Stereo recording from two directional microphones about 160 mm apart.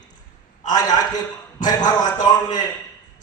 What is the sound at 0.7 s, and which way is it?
A man's voice, 25° left (ahead or behind).